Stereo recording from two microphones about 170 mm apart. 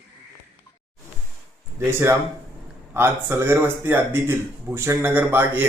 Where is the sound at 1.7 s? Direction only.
15° right (ahead or behind).